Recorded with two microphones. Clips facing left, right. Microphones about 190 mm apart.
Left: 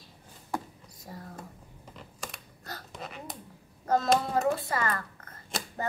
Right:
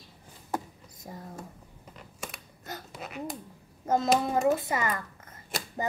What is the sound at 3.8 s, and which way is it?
Speech, 20° right (ahead or behind).